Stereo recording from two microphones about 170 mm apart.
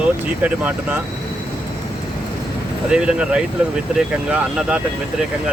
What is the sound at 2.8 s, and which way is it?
Speech, 5° right (ahead or behind).